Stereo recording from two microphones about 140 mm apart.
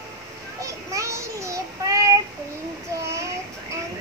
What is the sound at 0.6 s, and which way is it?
Child singing, 20° right (ahead or behind).